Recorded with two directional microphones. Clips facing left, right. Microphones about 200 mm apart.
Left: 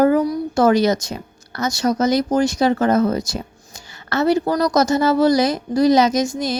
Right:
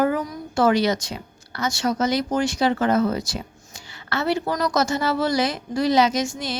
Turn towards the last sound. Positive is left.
turn(degrees=40)  # may be behind; listen again after turning